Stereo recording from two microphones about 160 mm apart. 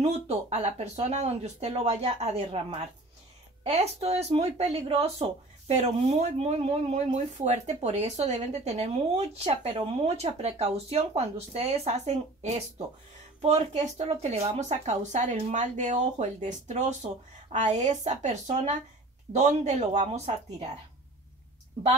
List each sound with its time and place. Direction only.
0.0 s speech: 40° right (ahead or behind)